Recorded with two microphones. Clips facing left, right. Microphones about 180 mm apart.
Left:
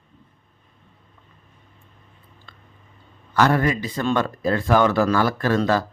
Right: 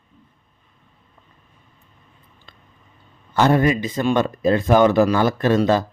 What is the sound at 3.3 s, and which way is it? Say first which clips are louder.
Speech: right 3 dB; 20° right (ahead or behind).